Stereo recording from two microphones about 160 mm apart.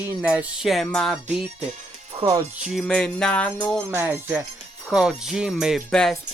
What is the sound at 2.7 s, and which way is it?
Speech, 5° left (ahead or behind).